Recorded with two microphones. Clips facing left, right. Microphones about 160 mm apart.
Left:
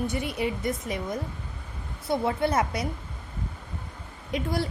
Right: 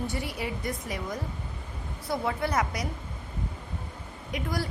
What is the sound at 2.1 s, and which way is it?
Speech, 25° left (ahead or behind).